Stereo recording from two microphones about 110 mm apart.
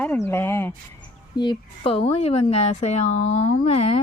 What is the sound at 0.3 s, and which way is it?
Speech, 20° left (ahead or behind).